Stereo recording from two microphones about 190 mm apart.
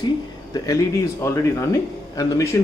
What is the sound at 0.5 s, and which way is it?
Speech, 20° left (ahead or behind).